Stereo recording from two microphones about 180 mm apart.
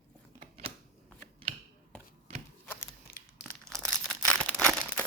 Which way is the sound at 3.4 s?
5° left (ahead or behind).